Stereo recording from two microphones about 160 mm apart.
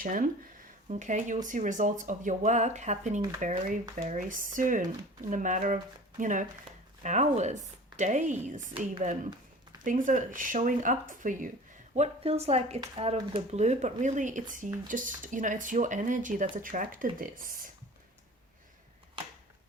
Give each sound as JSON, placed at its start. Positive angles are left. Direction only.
{"t": 0.0, "sound": "speech", "side_deg": -60}
{"t": 9.8, "sound": "speech", "side_deg": -55}
{"t": 11.9, "sound": "a woman's voice", "side_deg": -40}